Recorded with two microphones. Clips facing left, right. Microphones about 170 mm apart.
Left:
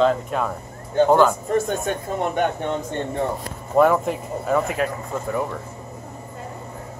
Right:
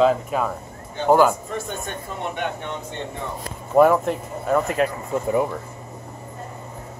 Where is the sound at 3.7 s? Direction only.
5° right (ahead or behind).